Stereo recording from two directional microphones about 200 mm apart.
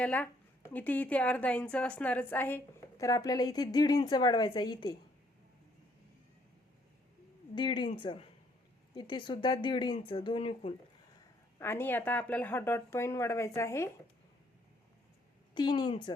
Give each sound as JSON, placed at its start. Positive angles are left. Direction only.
{"t": 0.0, "sound": "a woman's voice", "side_deg": 5}
{"t": 7.5, "sound": "a woman's voice", "side_deg": 25}
{"t": 11.6, "sound": "a woman's voice", "side_deg": 10}
{"t": 15.5, "sound": "a woman's voice", "side_deg": 20}